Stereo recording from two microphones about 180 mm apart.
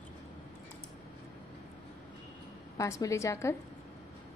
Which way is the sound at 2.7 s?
15° left (ahead or behind).